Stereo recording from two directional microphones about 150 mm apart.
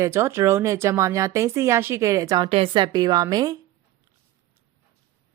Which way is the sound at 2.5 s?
40° right (ahead or behind).